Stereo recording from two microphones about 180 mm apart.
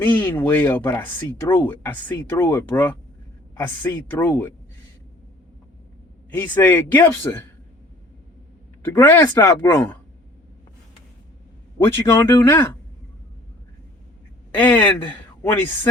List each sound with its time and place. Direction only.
0.0 s speech: 10° left (ahead or behind)
6.3 s speech: 10° left (ahead or behind)
8.8 s speech: 15° left (ahead or behind)
11.9 s speech: 15° left (ahead or behind)
14.5 s speech: 10° left (ahead or behind)